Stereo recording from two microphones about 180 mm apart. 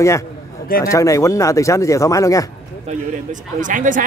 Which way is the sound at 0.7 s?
55° left (ahead or behind).